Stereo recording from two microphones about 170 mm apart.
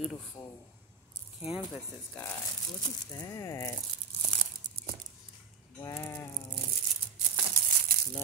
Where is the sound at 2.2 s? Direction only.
10° left (ahead or behind).